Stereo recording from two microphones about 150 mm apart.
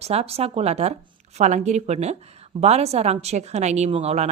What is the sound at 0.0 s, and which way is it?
Speech, 45° right (ahead or behind).